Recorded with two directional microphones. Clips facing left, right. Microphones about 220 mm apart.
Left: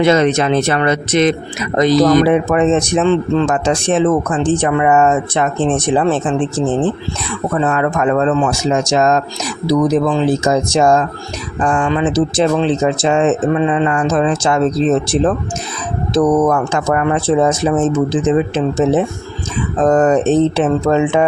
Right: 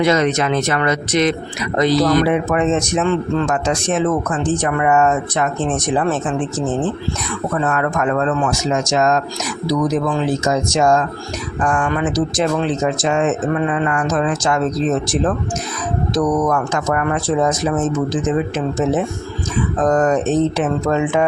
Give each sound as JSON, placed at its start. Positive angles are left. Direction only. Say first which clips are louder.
{"t": 0.0, "sound": "a man's voice", "louder": "left 4 dB", "side_deg": 30}
{"t": 2.2, "sound": "a man's voice", "louder": "left 4 dB", "side_deg": 35}